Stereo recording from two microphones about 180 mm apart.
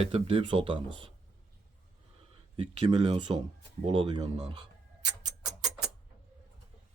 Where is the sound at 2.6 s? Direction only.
30° right (ahead or behind).